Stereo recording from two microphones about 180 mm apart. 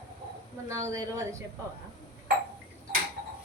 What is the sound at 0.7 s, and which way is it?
Speech, 20° right (ahead or behind).